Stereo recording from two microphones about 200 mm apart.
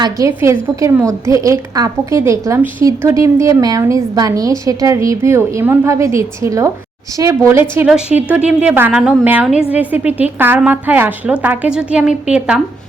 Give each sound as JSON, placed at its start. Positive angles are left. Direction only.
{"t": 0.0, "sound": "a woman's voice", "side_deg": -15}